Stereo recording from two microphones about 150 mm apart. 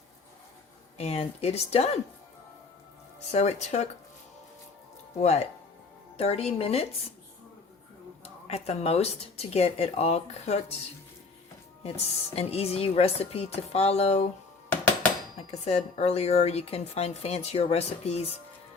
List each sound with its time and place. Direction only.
0.9 s a woman's voice: 45° left (ahead or behind)
3.3 s a woman's voice: 50° left (ahead or behind)
5.2 s a woman's voice: 45° left (ahead or behind)
8.2 s a woman's voice: 45° left (ahead or behind)
11.8 s a woman's voice: 40° left (ahead or behind)
15.6 s a woman's voice: 45° left (ahead or behind)